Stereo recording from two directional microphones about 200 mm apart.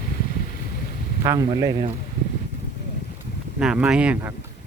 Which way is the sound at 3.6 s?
5° right (ahead or behind).